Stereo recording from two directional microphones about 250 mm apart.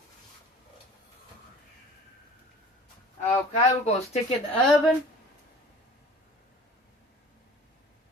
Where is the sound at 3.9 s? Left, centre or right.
Left.